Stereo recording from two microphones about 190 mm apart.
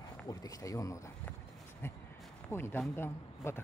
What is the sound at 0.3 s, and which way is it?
Speech, 20° left (ahead or behind).